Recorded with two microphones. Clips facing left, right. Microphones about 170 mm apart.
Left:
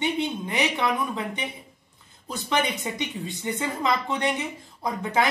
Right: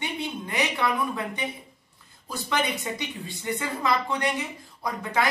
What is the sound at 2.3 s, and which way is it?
A woman's voice, 20° left (ahead or behind).